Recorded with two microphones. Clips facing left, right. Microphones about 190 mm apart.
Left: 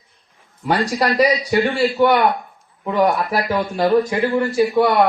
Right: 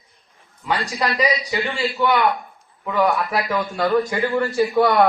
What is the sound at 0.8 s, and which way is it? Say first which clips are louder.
A man's voice: left 7 dB; 40° left (ahead or behind).